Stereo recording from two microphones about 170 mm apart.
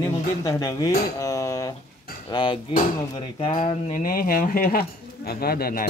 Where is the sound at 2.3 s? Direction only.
25° left (ahead or behind).